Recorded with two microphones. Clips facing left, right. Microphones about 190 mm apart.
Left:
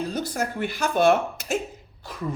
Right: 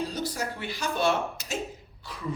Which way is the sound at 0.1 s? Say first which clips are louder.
Left 4 dB; 50° left (ahead or behind).